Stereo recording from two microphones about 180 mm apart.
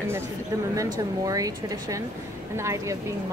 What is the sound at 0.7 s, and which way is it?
Speech, 20° right (ahead or behind).